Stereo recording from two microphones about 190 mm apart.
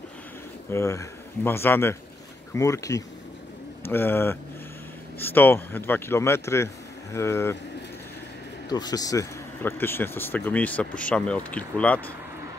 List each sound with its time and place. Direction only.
0.7 s speech: 15° left (ahead or behind)
8.6 s speech: 20° left (ahead or behind)